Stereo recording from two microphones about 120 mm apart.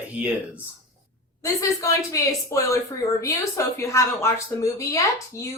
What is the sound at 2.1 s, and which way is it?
Speech, 25° left (ahead or behind).